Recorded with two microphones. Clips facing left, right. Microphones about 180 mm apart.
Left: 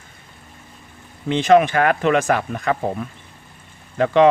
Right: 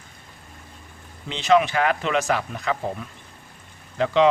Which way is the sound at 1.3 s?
50° left (ahead or behind).